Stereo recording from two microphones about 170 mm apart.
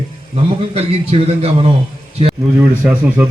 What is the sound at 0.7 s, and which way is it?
A man's voice, 35° right (ahead or behind).